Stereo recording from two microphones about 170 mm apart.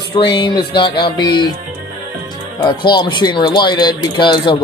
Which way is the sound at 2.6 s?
25° left (ahead or behind).